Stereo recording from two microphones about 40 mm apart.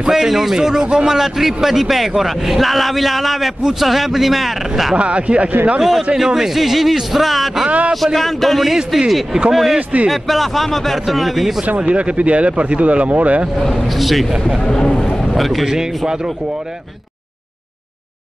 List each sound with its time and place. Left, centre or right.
0.1 s a man's voice: centre
4.9 s speech: right
5.8 s a man's voice: centre
7.6 s speech: right
7.9 s a man's voice: centre
8.7 s speech: centre
9.5 s a man's voice: centre
11.8 s speech: right
13.6 s a man's voice: centre
15.0 s boat: centre
15.3 s speech: centre